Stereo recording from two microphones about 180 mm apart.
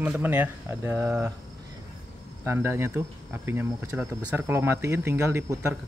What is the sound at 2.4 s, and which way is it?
Speech, 15° right (ahead or behind).